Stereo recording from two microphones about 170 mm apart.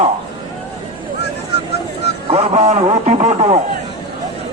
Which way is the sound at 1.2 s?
75° left (ahead or behind).